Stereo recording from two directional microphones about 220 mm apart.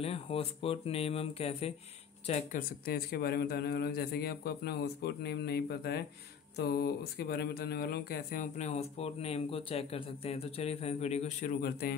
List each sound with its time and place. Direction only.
0.0 s speech: 25° left (ahead or behind)
2.8 s a man's voice: 45° left (ahead or behind)